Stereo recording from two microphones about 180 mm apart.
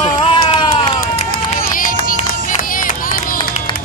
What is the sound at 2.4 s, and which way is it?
Music, 50° left (ahead or behind).